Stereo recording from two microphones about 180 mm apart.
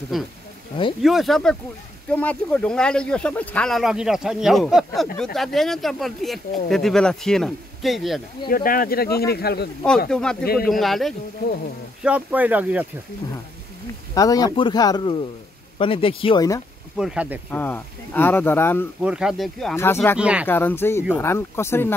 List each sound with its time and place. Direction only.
0.1 s speech: centre (ahead or behind)
8.5 s speech: 50° left (ahead or behind)
10.0 s speech: 5° left (ahead or behind)
10.4 s speech: 55° left (ahead or behind)
10.7 s speech: centre (ahead or behind)
14.1 s speech: 20° left (ahead or behind)
16.9 s speech: 5° right (ahead or behind)
17.5 s speech: 10° left (ahead or behind)
18.9 s speech: 5° right (ahead or behind)
19.7 s speech: 15° left (ahead or behind)
20.2 s speech: 5° right (ahead or behind)
20.4 s speech: 10° left (ahead or behind)